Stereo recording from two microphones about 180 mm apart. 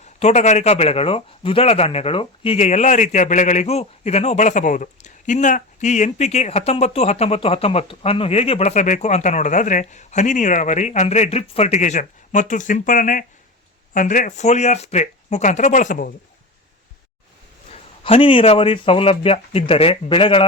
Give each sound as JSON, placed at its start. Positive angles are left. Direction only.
{"t": 0.2, "sound": "a man's voice", "side_deg": 40}
{"t": 17.7, "sound": "a man's voice", "side_deg": 30}